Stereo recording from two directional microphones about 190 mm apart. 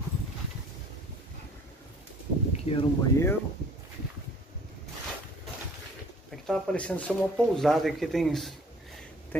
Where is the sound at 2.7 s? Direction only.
30° left (ahead or behind).